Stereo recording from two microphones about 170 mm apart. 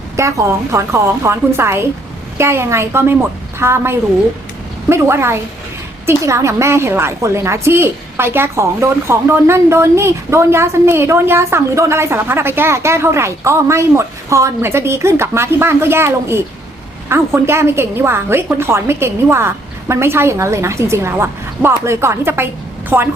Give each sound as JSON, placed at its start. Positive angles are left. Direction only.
{"t": 0.2, "sound": "a woman's voice", "side_deg": -15}